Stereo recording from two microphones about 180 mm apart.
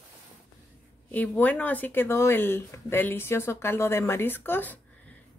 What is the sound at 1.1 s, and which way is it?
Speech, 10° left (ahead or behind).